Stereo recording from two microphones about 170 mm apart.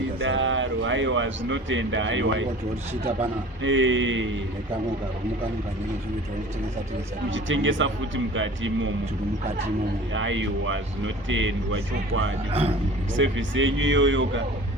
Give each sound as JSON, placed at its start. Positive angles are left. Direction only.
{"t": 0.3, "sound": "a man's voice", "side_deg": -90}
{"t": 3.6, "sound": "a man's voice", "side_deg": -90}
{"t": 7.3, "sound": "a man's voice", "side_deg": -90}
{"t": 10.2, "sound": "a man's voice", "side_deg": -90}
{"t": 13.1, "sound": "a man's voice", "side_deg": -90}